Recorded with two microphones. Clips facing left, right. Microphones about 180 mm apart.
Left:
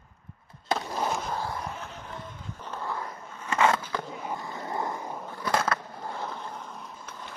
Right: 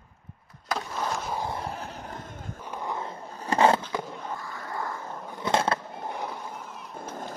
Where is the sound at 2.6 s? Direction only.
15° right (ahead or behind); by 3.8 s 35° right (ahead or behind).